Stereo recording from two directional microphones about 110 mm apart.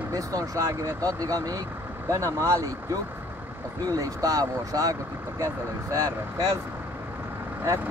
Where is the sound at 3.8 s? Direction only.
35° right (ahead or behind).